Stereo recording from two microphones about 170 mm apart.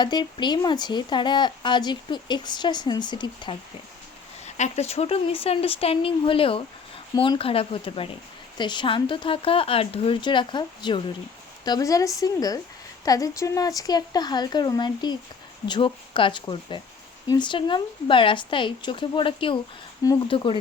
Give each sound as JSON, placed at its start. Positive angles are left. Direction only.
{"t": 0.0, "sound": "speech", "side_deg": 25}
{"t": 4.4, "sound": "speech", "side_deg": 40}